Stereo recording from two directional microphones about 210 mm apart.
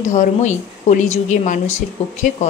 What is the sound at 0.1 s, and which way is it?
Speech, 35° left (ahead or behind).